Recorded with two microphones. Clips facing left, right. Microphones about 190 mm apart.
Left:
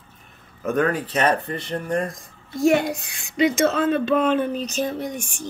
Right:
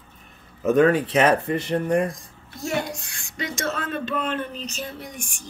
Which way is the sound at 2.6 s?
60° left (ahead or behind).